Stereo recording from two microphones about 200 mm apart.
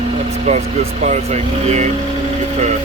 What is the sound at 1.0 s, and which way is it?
Speech, 35° right (ahead or behind).